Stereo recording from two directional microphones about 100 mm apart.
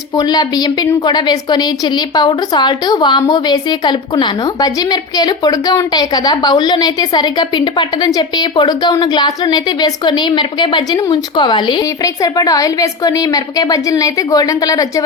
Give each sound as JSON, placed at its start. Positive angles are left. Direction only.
{"t": 0.2, "sound": "a woman's voice", "side_deg": 40}
{"t": 12.0, "sound": "a woman's voice", "side_deg": 35}